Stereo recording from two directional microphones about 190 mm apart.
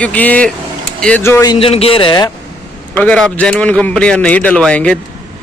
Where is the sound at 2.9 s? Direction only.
5° left (ahead or behind).